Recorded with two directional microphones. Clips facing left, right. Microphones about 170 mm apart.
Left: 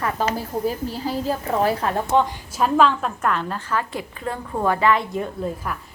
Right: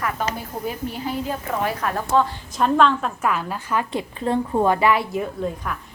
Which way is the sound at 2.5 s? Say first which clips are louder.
Even; 5° left (ahead or behind).